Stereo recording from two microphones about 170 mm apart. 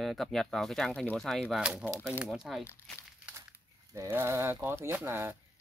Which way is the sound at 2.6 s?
15° left (ahead or behind).